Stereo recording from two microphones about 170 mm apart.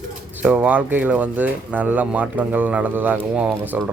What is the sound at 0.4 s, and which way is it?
Speech, 10° right (ahead or behind).